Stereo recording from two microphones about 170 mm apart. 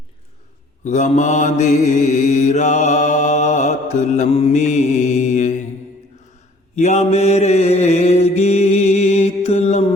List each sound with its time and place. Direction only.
0.9 s mantra: 45° left (ahead or behind)
6.7 s mantra: 40° left (ahead or behind)